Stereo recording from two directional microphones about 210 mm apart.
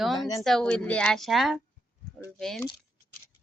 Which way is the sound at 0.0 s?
Centre (ahead or behind).